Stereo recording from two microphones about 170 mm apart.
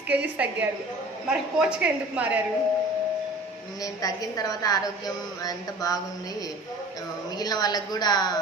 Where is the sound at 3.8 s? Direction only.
20° left (ahead or behind).